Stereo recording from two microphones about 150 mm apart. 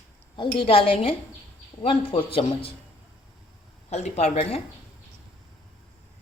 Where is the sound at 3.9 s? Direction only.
50° left (ahead or behind).